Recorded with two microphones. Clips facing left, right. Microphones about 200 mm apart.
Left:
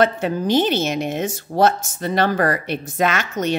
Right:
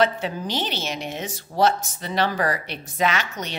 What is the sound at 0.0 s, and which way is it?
Speech, 50° left (ahead or behind).